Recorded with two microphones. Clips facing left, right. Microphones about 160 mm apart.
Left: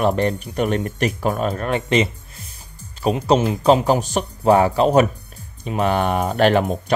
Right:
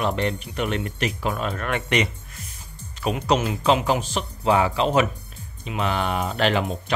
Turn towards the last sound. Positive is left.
turn(degrees=50)  # may be behind; listen again after turning